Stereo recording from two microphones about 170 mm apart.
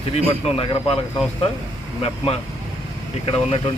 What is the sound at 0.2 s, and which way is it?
Speech, 35° left (ahead or behind).